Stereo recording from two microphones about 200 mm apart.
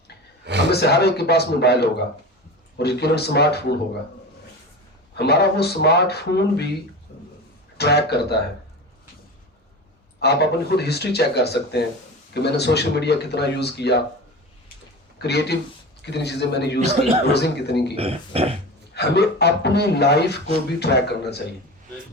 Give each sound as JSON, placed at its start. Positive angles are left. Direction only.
{"t": 0.7, "sound": "speech", "side_deg": 55}
{"t": 5.1, "sound": "speech", "side_deg": 55}
{"t": 7.8, "sound": "speech", "side_deg": 55}
{"t": 10.2, "sound": "speech", "side_deg": 55}
{"t": 15.2, "sound": "speech", "side_deg": 55}
{"t": 17.9, "sound": "speech", "side_deg": -30}
{"t": 18.9, "sound": "speech", "side_deg": 55}